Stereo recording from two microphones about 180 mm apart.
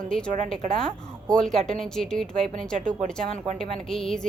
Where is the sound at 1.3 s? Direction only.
5° left (ahead or behind).